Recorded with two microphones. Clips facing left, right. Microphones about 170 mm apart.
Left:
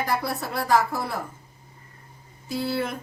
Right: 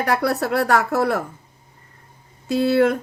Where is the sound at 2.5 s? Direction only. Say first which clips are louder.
Right 10 dB; 70° right (ahead or behind).